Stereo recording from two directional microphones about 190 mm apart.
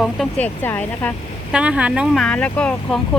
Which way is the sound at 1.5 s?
5° right (ahead or behind).